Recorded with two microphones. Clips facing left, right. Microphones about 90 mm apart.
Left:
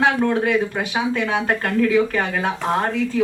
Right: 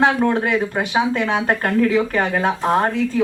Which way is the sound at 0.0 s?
30° right (ahead or behind).